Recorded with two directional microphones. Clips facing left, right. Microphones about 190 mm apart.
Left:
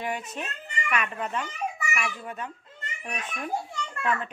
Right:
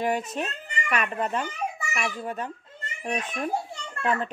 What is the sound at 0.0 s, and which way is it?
A child's voice, 40° right (ahead or behind).